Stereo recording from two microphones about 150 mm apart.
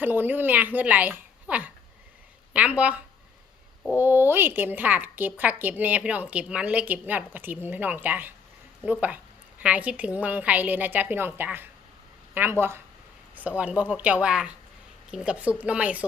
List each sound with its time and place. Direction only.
0.0 s a woman's voice: 15° right (ahead or behind)